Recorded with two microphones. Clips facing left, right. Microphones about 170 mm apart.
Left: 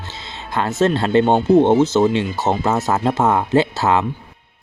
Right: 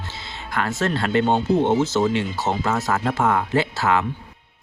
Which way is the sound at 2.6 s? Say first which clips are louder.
Left 4 dB; 20° left (ahead or behind).